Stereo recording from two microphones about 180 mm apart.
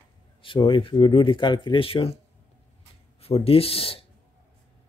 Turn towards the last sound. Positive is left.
turn(degrees=30)  # may be behind; listen again after turning